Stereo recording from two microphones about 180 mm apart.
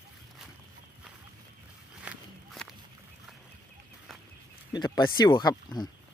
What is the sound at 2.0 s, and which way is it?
Walk, 5° right (ahead or behind).